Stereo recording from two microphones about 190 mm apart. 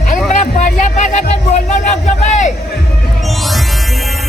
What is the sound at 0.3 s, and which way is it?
Music, 40° left (ahead or behind).